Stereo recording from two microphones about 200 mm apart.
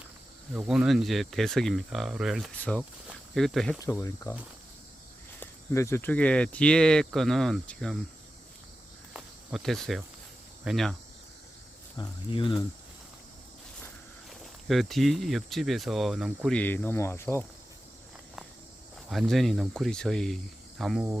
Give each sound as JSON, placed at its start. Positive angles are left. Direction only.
{"t": 0.5, "sound": "speech", "side_deg": -5}
{"t": 3.8, "sound": "speech", "side_deg": 15}
{"t": 5.4, "sound": "speech", "side_deg": 15}
{"t": 9.1, "sound": "cricket", "side_deg": 0}
{"t": 10.6, "sound": "speech", "side_deg": 0}
{"t": 11.9, "sound": "speech", "side_deg": 25}
{"t": 14.3, "sound": "speech", "side_deg": 0}
{"t": 19.0, "sound": "speech", "side_deg": 0}